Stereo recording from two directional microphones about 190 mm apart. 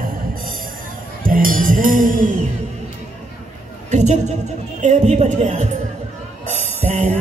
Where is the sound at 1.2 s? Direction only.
45° right (ahead or behind).